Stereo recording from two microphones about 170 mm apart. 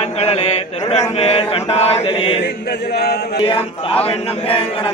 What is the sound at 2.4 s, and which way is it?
Chant, 75° left (ahead or behind).